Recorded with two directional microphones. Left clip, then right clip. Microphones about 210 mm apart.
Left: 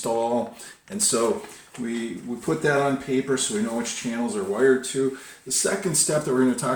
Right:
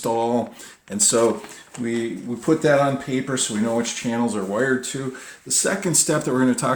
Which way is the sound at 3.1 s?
45° right (ahead or behind).